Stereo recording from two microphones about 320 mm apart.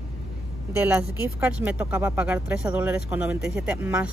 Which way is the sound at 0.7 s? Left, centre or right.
Centre.